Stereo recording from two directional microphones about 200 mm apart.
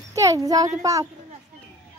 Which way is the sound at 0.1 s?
15° right (ahead or behind).